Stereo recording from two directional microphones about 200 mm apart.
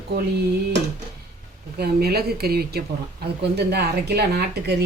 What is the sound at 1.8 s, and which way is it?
A woman's voice, 50° right (ahead or behind).